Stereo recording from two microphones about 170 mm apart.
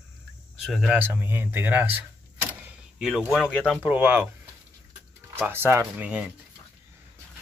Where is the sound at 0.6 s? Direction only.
5° right (ahead or behind).